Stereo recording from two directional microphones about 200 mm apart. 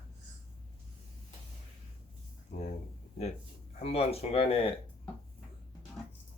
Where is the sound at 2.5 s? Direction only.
40° left (ahead or behind).